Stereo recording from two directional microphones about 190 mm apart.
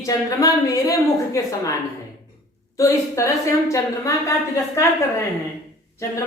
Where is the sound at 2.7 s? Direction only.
15° left (ahead or behind).